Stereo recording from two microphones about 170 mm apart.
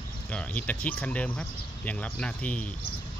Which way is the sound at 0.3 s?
10° left (ahead or behind).